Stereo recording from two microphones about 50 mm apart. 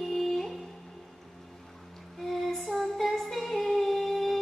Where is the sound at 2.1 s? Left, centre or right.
Centre.